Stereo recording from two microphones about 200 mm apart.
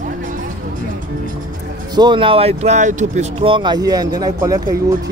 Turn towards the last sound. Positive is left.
turn(degrees=-15)  # may be behind; listen again after turning